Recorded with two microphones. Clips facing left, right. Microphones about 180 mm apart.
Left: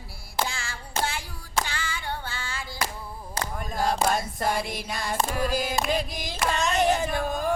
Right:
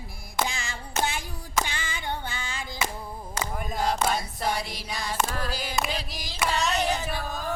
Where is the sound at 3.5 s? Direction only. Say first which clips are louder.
Right 1 dB; 5° right (ahead or behind).